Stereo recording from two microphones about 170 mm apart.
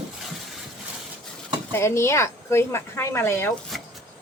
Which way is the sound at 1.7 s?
15° left (ahead or behind).